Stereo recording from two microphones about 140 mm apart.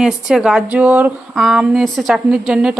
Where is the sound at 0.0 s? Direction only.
5° right (ahead or behind).